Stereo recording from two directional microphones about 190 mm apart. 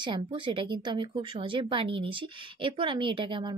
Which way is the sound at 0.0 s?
25° right (ahead or behind).